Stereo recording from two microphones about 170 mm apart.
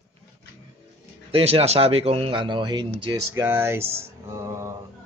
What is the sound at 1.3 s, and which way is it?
Speech, 35° right (ahead or behind).